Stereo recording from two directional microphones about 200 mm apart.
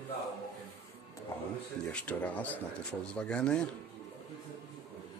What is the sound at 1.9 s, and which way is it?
Speech, 5° left (ahead or behind).